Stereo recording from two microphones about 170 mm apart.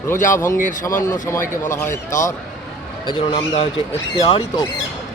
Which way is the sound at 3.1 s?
30° left (ahead or behind).